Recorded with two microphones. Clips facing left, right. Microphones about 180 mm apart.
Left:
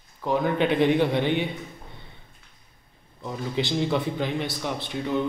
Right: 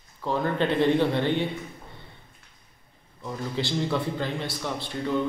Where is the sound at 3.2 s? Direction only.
20° left (ahead or behind).